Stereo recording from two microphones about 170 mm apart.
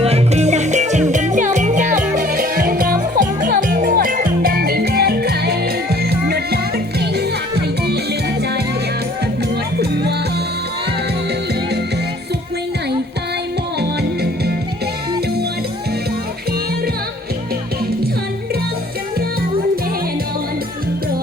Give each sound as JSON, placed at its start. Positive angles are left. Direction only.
{"t": 0.0, "sound": "music", "side_deg": -40}
{"t": 9.7, "sound": "music", "side_deg": -70}
{"t": 13.7, "sound": "music", "side_deg": -70}